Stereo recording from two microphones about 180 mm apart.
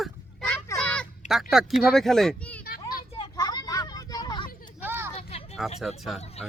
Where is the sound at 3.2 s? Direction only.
20° left (ahead or behind).